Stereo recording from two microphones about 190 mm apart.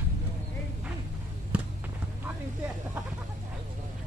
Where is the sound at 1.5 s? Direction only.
5° right (ahead or behind).